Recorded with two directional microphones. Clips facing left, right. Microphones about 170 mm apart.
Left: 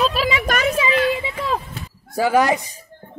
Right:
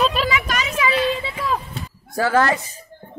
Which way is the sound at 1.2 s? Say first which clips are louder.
Left 1 dB; 20° left (ahead or behind).